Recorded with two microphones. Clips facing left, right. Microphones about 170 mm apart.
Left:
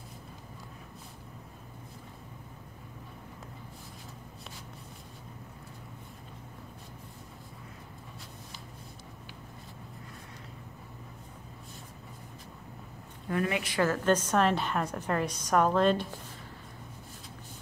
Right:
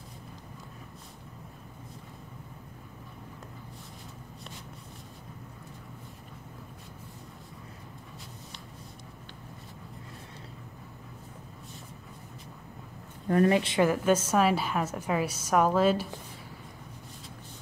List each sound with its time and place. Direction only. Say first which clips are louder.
13.3 s speech: right 7 dB; 35° right (ahead or behind)
13.8 s a woman's voice: right 2 dB; 10° right (ahead or behind)